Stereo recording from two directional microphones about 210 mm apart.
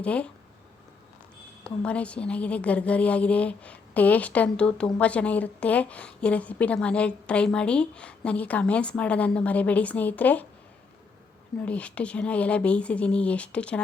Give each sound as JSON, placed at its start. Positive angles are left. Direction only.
{"t": 0.0, "sound": "speech", "side_deg": 5}
{"t": 1.6, "sound": "a woman's voice", "side_deg": 5}
{"t": 11.6, "sound": "speech", "side_deg": 5}